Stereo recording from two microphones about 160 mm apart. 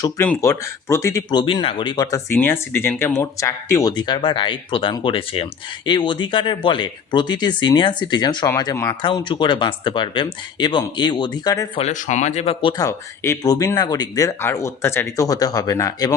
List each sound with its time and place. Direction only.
0.0 s speech: 15° left (ahead or behind)
11.8 s speech: 50° left (ahead or behind)
12.7 s speech: 20° left (ahead or behind)